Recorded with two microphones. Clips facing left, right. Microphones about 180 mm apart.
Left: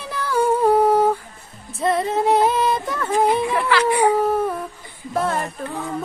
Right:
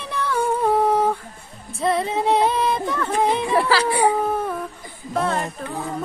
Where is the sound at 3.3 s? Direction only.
35° right (ahead or behind).